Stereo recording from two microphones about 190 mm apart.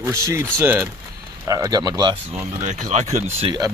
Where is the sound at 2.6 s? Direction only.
40° right (ahead or behind).